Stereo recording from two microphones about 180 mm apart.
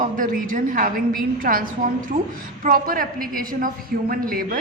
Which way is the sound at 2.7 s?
50° right (ahead or behind).